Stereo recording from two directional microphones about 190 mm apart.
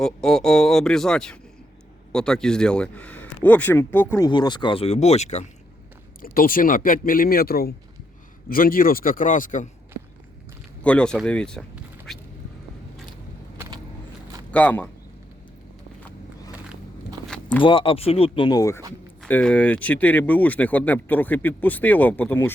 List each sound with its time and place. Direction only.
0.0 s speech: 5° left (ahead or behind)
4.3 s speech: 25° left (ahead or behind)
6.2 s speech: 50° left (ahead or behind)
10.8 s speech: 5° left (ahead or behind)
12.1 s duck: centre (ahead or behind)
14.5 s speech: 10° left (ahead or behind)
17.2 s vehicle: 5° left (ahead or behind)
17.6 s speech: 25° left (ahead or behind)
19.2 s speech: 5° left (ahead or behind)